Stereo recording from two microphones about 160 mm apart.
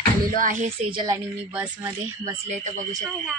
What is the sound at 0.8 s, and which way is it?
Speech, 30° right (ahead or behind).